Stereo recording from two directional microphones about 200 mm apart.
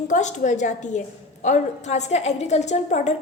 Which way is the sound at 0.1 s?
35° left (ahead or behind).